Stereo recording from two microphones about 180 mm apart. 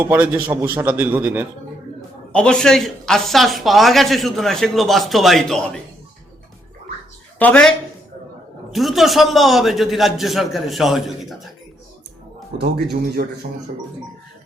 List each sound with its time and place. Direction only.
0.0 s a man's voice: 10° right (ahead or behind)
2.3 s speech: 5° left (ahead or behind)
7.3 s speech: 5° left (ahead or behind)
8.7 s speech: centre (ahead or behind)
12.5 s speech: 60° right (ahead or behind)